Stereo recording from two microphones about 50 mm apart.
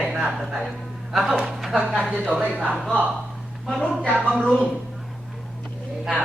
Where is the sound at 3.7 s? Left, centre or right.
Centre.